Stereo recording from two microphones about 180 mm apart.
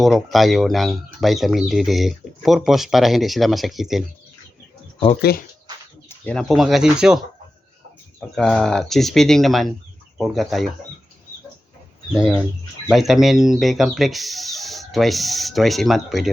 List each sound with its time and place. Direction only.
0.0 s speech: centre (ahead or behind)
5.3 s speech: 60° left (ahead or behind)
6.1 s speech: 5° left (ahead or behind)
8.4 s speech: centre (ahead or behind)
12.1 s speech: 5° right (ahead or behind)